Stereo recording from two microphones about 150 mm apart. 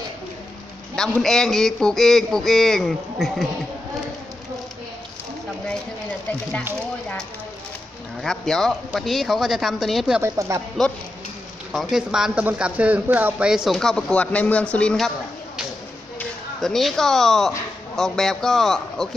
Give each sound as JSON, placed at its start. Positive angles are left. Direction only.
{"t": 0.9, "sound": "speech", "side_deg": 5}
{"t": 8.2, "sound": "speech", "side_deg": 5}
{"t": 10.2, "sound": "speech", "side_deg": -20}
{"t": 11.7, "sound": "speech", "side_deg": 0}